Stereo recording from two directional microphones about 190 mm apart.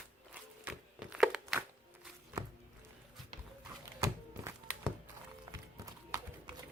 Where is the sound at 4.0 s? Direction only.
15° right (ahead or behind).